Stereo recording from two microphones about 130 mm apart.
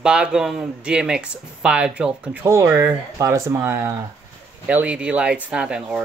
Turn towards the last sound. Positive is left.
turn(degrees=-10)  # may be behind; listen again after turning